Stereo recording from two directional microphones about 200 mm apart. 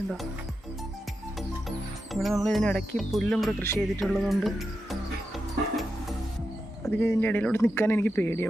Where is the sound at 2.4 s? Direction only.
5° left (ahead or behind).